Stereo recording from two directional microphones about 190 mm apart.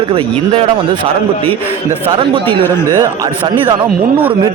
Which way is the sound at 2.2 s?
25° right (ahead or behind).